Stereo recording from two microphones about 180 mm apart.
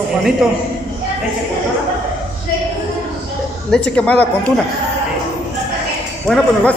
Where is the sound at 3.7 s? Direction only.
5° left (ahead or behind).